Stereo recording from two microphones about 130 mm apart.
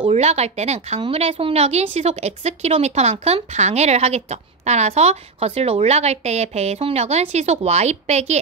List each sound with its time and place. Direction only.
0.1 s a woman's voice: 55° right (ahead or behind)